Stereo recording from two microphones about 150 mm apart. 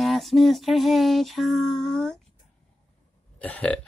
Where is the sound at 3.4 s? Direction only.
10° left (ahead or behind).